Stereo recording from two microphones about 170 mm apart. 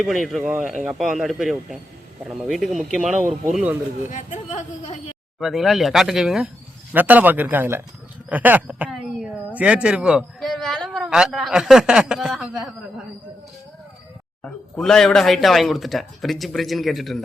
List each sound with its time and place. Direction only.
0.0 s a man's voice: centre (ahead or behind)
4.1 s speech: 45° left (ahead or behind)
5.4 s a man's voice: centre (ahead or behind)
14.4 s speech: 5° left (ahead or behind)